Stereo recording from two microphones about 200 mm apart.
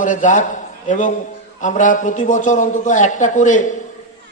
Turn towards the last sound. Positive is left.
turn(degrees=40)  # may be behind; listen again after turning